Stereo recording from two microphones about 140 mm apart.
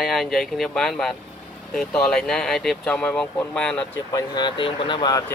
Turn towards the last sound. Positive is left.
turn(degrees=30)  # may be behind; listen again after turning